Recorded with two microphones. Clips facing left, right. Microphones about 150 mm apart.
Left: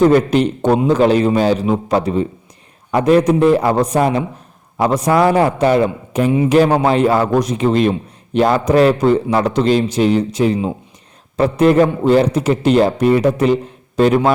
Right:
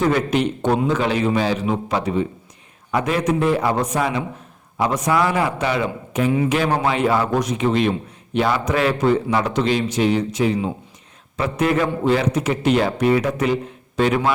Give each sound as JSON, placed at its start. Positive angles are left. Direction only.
{"t": 0.0, "sound": "a man's voice", "side_deg": 35}